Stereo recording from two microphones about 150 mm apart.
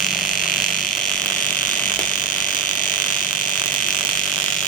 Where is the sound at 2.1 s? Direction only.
65° left (ahead or behind).